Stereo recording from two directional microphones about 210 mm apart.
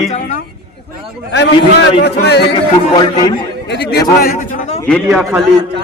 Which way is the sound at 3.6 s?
55° left (ahead or behind).